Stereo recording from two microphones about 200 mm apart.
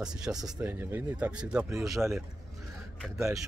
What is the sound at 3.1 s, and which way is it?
Speech, 15° right (ahead or behind).